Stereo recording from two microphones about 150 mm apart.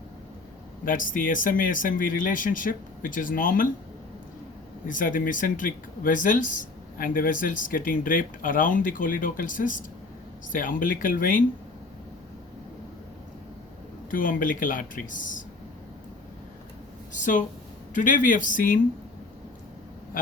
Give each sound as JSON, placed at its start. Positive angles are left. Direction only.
{"t": 0.9, "sound": "speech", "side_deg": 65}
{"t": 4.9, "sound": "speech", "side_deg": 65}
{"t": 14.1, "sound": "speech", "side_deg": 65}
{"t": 17.1, "sound": "a sound", "side_deg": 60}
{"t": 17.9, "sound": "speech", "side_deg": 60}